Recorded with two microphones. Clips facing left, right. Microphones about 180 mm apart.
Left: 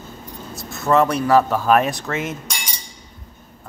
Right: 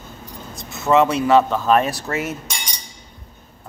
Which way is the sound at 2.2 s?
5° right (ahead or behind).